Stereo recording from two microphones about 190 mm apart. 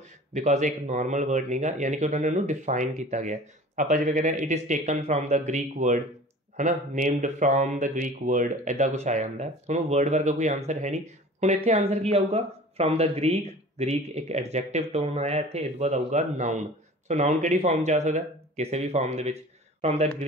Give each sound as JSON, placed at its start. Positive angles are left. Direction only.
{"t": 0.3, "sound": "speech", "side_deg": -40}